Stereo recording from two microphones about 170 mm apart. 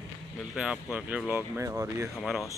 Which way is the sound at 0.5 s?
5° right (ahead or behind).